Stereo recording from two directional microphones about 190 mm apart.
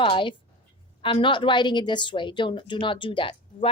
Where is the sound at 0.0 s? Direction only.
25° left (ahead or behind).